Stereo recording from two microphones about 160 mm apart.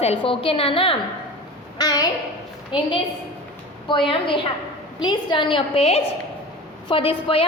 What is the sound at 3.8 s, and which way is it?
A woman's voice, 30° left (ahead or behind).